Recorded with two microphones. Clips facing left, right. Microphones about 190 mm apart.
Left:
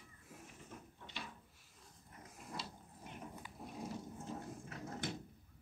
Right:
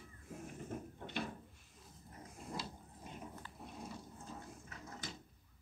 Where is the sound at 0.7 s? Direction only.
50° right (ahead or behind).